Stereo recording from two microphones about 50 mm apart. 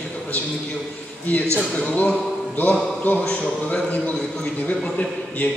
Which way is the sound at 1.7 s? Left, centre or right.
Left.